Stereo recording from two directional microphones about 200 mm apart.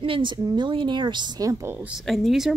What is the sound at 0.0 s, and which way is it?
A woman's voice, 25° right (ahead or behind).